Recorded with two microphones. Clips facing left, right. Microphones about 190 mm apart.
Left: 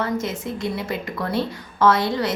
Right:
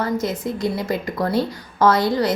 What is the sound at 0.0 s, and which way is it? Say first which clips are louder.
Speech: right 2 dB; 40° right (ahead or behind).